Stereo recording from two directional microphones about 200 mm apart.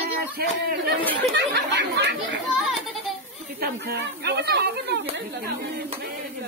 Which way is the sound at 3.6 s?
55° right (ahead or behind).